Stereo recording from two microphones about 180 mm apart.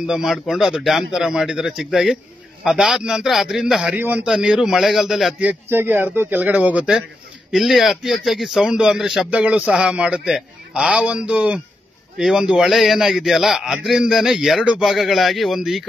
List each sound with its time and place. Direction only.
0.0 s a man's voice: centre (ahead or behind)